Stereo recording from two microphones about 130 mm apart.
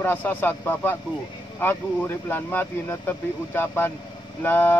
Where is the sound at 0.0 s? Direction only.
15° left (ahead or behind).